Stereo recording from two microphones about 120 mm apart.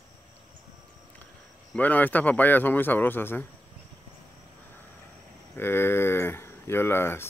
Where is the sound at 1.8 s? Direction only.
15° left (ahead or behind).